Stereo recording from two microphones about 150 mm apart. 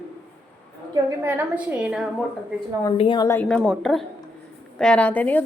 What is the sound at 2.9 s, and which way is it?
Speech, 35° left (ahead or behind).